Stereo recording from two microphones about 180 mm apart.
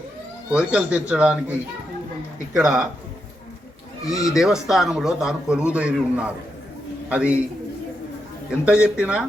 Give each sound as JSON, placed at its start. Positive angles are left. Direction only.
{"t": 0.5, "sound": "speech", "side_deg": -5}
{"t": 2.6, "sound": "a man's voice", "side_deg": -5}
{"t": 4.0, "sound": "speech", "side_deg": 20}
{"t": 4.3, "sound": "a man's voice", "side_deg": -5}
{"t": 8.6, "sound": "a man's voice", "side_deg": -5}